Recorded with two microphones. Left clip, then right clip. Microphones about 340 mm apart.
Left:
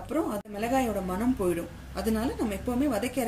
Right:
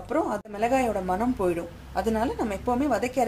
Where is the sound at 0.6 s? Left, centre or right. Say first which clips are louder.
Right 4 dB; centre.